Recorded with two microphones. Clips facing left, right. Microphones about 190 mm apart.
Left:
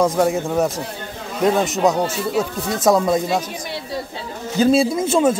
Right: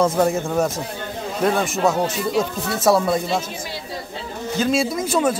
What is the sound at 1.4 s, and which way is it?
Speech, 20° left (ahead or behind).